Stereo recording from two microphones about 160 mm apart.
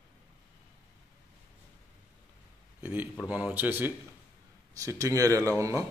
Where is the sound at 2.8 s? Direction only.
10° right (ahead or behind).